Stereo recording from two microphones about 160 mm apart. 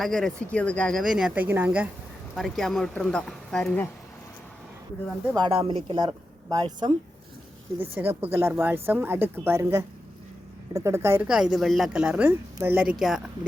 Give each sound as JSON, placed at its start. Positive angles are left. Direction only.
{"t": 0.0, "sound": "a woman's voice", "side_deg": 5}
{"t": 2.3, "sound": "a woman's voice", "side_deg": 0}
{"t": 5.3, "sound": "speech", "side_deg": -30}
{"t": 7.8, "sound": "a woman's voice", "side_deg": -15}
{"t": 11.3, "sound": "a woman's voice", "side_deg": -5}